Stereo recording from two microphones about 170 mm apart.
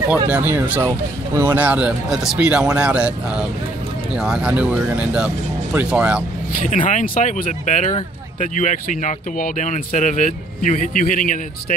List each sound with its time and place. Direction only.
0.1 s speech: 10° right (ahead or behind)
6.6 s speech: 50° left (ahead or behind)